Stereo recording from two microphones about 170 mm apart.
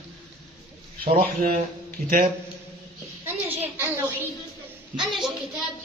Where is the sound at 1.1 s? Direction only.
55° right (ahead or behind).